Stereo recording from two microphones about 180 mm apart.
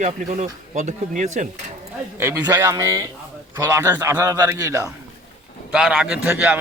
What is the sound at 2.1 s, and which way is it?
A man's voice, 15° right (ahead or behind).